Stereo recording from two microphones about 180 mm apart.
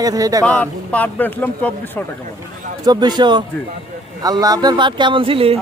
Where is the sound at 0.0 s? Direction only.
20° right (ahead or behind).